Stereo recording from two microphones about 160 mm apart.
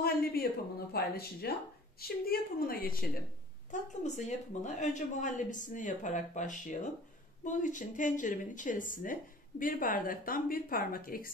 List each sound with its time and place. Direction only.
0.0 s a sound: 75° left (ahead or behind)
0.9 s a woman's voice: 75° left (ahead or behind)
4.0 s speech: 45° left (ahead or behind); by 11.2 s 65° left (ahead or behind)